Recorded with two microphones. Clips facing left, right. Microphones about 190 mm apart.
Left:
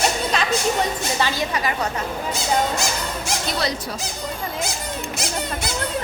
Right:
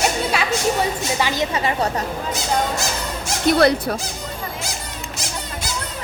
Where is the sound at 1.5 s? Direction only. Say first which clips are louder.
Right 2 dB; 25° right (ahead or behind).